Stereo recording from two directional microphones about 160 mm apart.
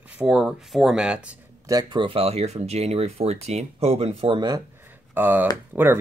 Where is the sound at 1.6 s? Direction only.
25° right (ahead or behind).